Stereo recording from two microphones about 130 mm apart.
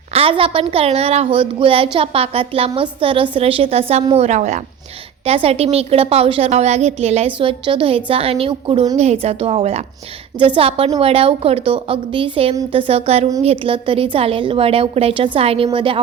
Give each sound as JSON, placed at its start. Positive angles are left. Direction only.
{"t": 0.1, "sound": "a woman's voice", "side_deg": -45}
{"t": 5.2, "sound": "a woman's voice", "side_deg": -50}
{"t": 9.0, "sound": "a woman's voice", "side_deg": -55}